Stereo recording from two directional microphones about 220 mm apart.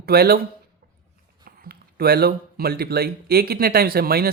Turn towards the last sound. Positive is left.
turn(degrees=-45)  # may be behind; listen again after turning